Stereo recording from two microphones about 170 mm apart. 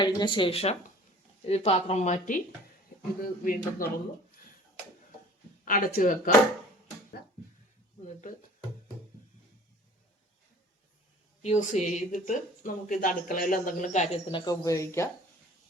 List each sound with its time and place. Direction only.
0.0 s speech: 25° left (ahead or behind); by 3.8 s 55° left (ahead or behind)
5.6 s speech: 55° left (ahead or behind)
8.0 s speech: 50° left (ahead or behind)
11.4 s speech: 45° left (ahead or behind); by 15.1 s 15° left (ahead or behind)